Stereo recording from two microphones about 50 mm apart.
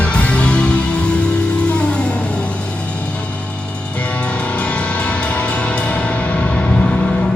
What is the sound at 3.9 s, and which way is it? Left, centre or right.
Music, left.